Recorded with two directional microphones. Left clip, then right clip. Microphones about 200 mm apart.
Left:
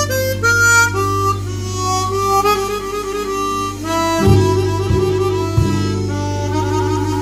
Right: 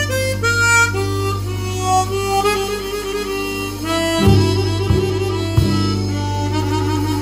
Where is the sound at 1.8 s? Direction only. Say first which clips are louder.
Even; 5° left (ahead or behind).